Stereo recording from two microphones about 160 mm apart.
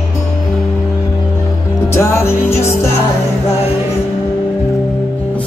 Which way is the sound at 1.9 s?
15° left (ahead or behind).